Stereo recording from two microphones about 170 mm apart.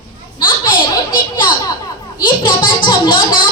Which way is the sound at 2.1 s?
30° left (ahead or behind).